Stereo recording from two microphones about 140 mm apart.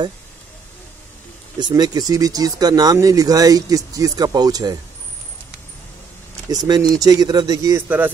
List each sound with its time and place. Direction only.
1.6 s speech: 30° right (ahead or behind)
6.5 s speech: 25° right (ahead or behind)